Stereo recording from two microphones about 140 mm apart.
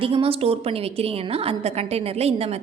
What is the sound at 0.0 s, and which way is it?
A woman's voice, 40° right (ahead or behind).